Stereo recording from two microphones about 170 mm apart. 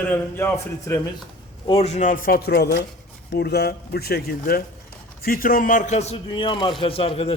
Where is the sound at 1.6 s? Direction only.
35° left (ahead or behind).